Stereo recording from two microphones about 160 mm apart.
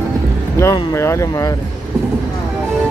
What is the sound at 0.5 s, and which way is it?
Speech, 20° left (ahead or behind).